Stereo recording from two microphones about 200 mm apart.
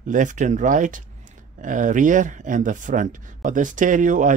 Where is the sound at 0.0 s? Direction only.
40° right (ahead or behind).